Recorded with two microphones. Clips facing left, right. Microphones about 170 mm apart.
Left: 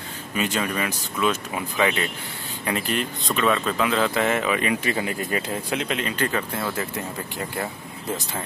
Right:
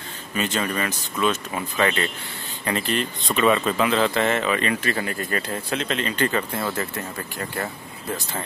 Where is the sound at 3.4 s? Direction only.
5° right (ahead or behind); by 8.4 s 20° left (ahead or behind).